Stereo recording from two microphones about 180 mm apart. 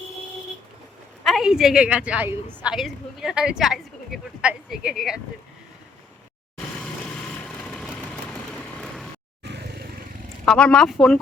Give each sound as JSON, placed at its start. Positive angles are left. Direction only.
{"t": 1.2, "sound": "speech", "side_deg": 0}
{"t": 6.7, "sound": "vehicle", "side_deg": 5}
{"t": 9.4, "sound": "vehicle", "side_deg": -65}
{"t": 10.4, "sound": "speech", "side_deg": 5}